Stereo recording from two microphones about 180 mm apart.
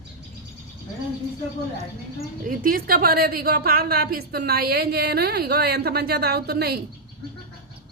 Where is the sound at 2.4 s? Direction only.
50° right (ahead or behind).